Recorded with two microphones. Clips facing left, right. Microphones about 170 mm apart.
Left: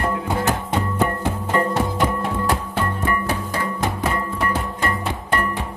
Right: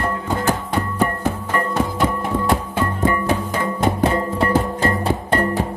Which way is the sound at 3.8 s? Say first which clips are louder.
Right 8 dB; 30° right (ahead or behind).